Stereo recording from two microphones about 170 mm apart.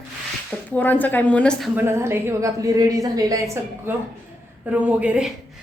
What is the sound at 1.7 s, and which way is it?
A woman's voice, 15° right (ahead or behind).